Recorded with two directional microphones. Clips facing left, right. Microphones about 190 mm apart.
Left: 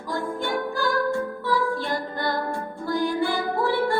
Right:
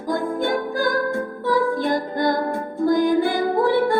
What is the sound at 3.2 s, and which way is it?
Music, 50° right (ahead or behind).